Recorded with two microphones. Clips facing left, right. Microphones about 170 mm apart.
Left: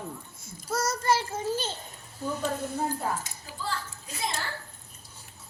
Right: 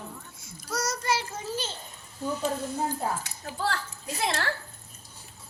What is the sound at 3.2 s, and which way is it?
A woman's voice, 70° right (ahead or behind).